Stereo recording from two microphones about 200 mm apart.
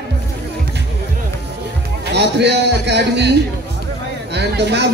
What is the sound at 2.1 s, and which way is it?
Speech, 55° right (ahead or behind).